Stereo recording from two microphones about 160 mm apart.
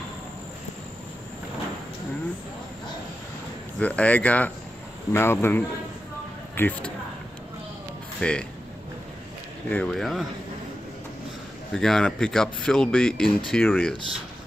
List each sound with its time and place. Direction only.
3.8 s speech: 10° left (ahead or behind)
8.2 s speech: 5° left (ahead or behind)
9.7 s speech: 5° left (ahead or behind)
11.7 s speech: 5° left (ahead or behind)